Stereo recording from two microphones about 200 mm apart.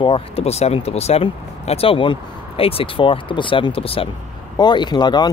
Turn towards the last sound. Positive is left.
turn(degrees=20)  # may be behind; listen again after turning